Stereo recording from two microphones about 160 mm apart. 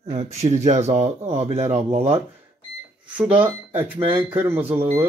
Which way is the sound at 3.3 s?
10° right (ahead or behind).